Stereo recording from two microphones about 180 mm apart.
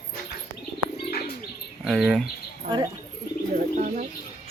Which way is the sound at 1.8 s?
Centre (ahead or behind).